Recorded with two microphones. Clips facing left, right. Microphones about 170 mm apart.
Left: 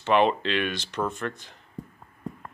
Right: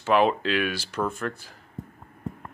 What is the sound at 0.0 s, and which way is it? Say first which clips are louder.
Speech: even; 5° right (ahead or behind).